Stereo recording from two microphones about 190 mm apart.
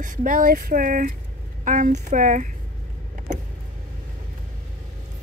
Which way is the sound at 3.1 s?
40° right (ahead or behind).